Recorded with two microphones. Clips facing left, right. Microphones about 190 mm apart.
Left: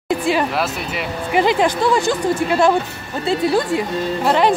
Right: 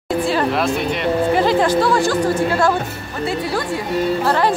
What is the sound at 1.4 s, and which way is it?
A woman's voice, 15° left (ahead or behind).